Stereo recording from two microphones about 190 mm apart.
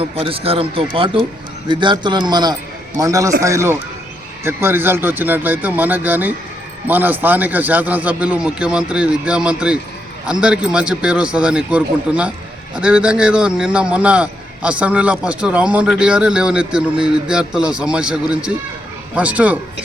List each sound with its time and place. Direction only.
0.0 s a man's voice: 30° right (ahead or behind); by 19.5 s 5° right (ahead or behind)